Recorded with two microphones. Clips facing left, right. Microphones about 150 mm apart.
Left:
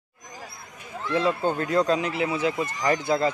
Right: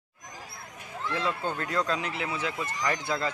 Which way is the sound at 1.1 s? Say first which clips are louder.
Left 8 dB; 20° left (ahead or behind).